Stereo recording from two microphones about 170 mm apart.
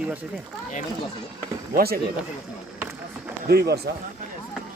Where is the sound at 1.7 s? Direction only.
60° right (ahead or behind).